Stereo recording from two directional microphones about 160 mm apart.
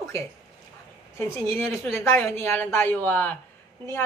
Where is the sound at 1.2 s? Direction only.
15° left (ahead or behind).